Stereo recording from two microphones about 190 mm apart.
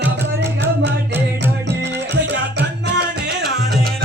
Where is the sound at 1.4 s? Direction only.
65° right (ahead or behind).